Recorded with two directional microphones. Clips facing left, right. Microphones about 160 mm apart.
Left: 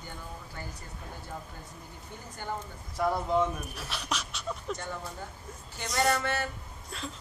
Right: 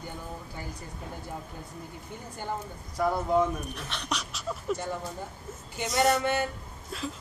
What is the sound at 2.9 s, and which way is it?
Speech, centre (ahead or behind).